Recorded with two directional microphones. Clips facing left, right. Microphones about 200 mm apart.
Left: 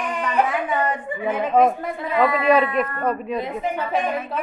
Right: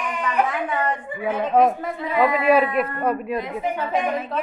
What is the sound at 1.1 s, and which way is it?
A man's voice, 10° right (ahead or behind).